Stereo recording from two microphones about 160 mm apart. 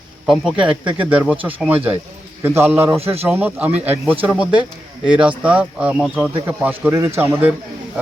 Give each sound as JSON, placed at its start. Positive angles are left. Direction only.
{"t": 0.3, "sound": "speech", "side_deg": -5}
{"t": 3.0, "sound": "speech", "side_deg": -40}
{"t": 3.2, "sound": "speech", "side_deg": -10}